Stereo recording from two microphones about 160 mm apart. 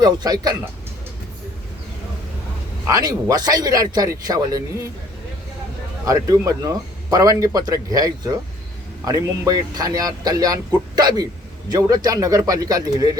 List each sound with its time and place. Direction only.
0.0 s speech: 25° right (ahead or behind)
2.8 s speech: 25° right (ahead or behind)
6.1 s speech: 20° right (ahead or behind)